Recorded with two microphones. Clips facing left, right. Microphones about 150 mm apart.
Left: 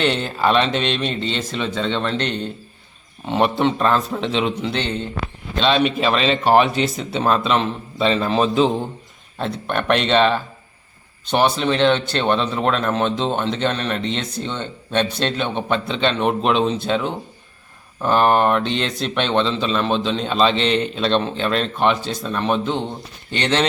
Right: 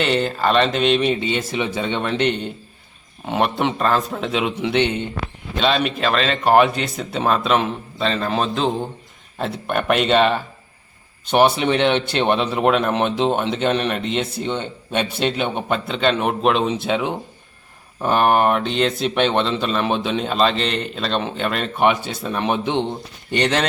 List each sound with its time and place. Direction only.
0.0 s speech: centre (ahead or behind)